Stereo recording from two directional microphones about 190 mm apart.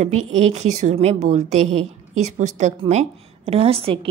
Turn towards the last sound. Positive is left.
turn(degrees=-30)  # may be behind; listen again after turning